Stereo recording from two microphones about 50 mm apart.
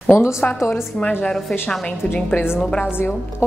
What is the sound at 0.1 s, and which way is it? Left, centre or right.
Speech, left.